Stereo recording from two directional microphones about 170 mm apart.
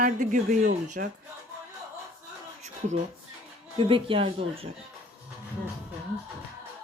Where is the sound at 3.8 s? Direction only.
30° right (ahead or behind).